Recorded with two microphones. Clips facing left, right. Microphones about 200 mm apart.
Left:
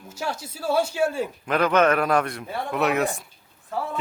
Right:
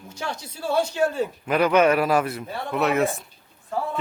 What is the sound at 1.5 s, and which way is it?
Speech, 10° right (ahead or behind).